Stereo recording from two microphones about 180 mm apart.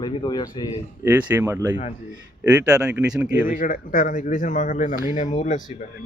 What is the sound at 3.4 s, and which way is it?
Speech, 50° left (ahead or behind).